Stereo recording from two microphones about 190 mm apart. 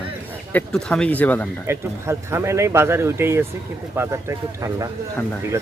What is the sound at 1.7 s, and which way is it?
Speech, 15° right (ahead or behind).